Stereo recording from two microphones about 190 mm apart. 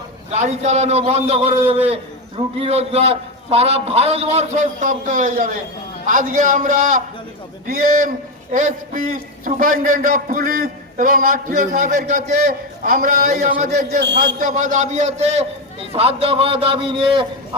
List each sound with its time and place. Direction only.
0.3 s a man's voice: 35° right (ahead or behind)
14.0 s a man's voice: 65° right (ahead or behind)
14.3 s a man's voice: 45° right (ahead or behind); by 17.2 s 25° right (ahead or behind)